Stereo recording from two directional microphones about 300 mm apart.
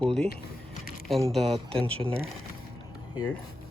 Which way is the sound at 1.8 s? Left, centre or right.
Centre.